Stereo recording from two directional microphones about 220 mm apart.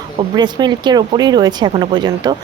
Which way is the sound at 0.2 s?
20° right (ahead or behind).